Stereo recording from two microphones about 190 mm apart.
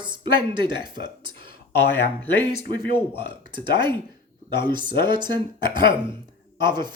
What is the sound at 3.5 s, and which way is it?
Speech, 25° right (ahead or behind).